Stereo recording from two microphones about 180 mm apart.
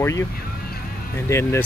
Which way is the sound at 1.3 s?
15° left (ahead or behind).